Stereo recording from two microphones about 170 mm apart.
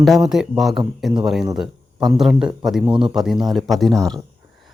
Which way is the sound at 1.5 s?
Centre (ahead or behind).